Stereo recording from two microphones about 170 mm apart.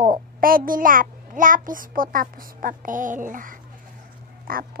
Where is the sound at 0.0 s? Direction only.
55° right (ahead or behind).